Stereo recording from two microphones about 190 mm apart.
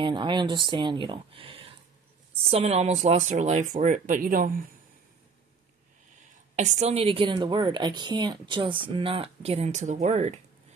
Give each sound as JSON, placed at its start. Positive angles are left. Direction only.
{"t": 0.0, "sound": "a woman's voice", "side_deg": -25}
{"t": 6.5, "sound": "a woman's voice", "side_deg": -40}